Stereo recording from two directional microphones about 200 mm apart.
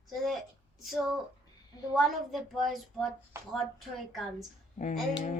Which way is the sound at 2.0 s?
Centre (ahead or behind).